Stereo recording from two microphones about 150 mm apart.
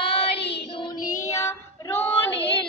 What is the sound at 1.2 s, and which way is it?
Child singing, 20° left (ahead or behind).